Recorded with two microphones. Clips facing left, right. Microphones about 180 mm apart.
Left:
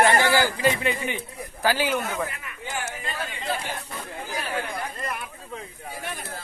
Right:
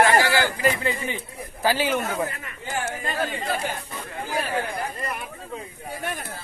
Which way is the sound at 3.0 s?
45° right (ahead or behind).